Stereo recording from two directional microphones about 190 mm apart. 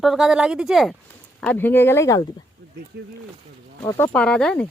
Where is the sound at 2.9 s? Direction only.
60° right (ahead or behind).